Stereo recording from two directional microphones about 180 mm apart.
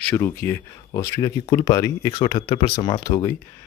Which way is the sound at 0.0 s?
10° left (ahead or behind).